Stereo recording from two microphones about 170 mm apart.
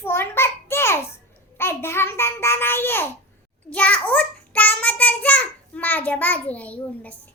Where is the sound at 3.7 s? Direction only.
10° left (ahead or behind).